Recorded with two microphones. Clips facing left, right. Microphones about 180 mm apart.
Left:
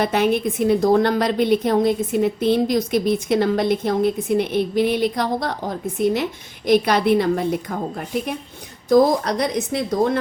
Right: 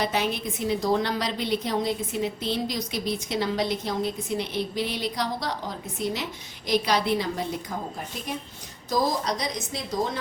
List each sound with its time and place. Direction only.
0.0 s a woman's voice: 55° left (ahead or behind)